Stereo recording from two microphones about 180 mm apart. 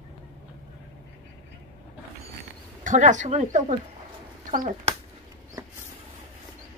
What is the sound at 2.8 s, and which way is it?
Speech, 45° right (ahead or behind).